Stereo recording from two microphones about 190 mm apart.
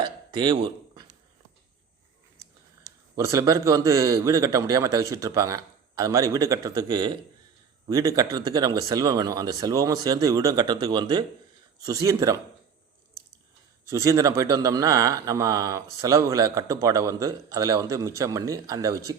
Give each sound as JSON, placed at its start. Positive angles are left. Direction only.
{"t": 0.0, "sound": "a sound", "side_deg": -25}
{"t": 3.2, "sound": "speech", "side_deg": -15}
{"t": 13.8, "sound": "speech", "side_deg": -15}